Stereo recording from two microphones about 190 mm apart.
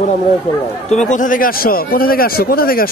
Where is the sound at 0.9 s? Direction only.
40° left (ahead or behind).